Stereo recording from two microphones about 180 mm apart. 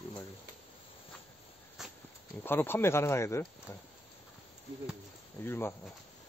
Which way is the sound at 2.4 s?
10° left (ahead or behind).